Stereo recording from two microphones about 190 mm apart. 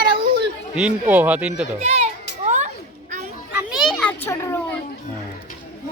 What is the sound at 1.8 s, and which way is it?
Children playing, 35° right (ahead or behind).